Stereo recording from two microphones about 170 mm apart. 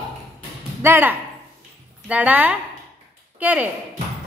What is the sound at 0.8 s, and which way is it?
Speech, 15° right (ahead or behind).